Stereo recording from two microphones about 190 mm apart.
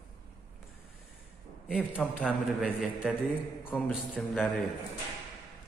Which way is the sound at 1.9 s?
Centre (ahead or behind).